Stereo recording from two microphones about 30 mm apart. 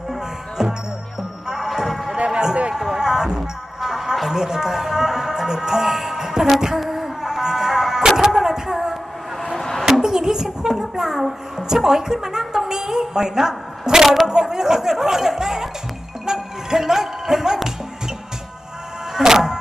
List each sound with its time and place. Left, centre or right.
0.6 s music: centre
2.1 s music: right
2.7 s music: centre
6.7 s a sound: centre
7.3 s music: centre
8.7 s a sound: centre
10.0 s music: centre
11.2 s a child's voice: centre
11.7 s a woman's voice: centre
13.8 s a sound: right
14.3 s speech: centre
16.2 s music: centre
19.1 s music: centre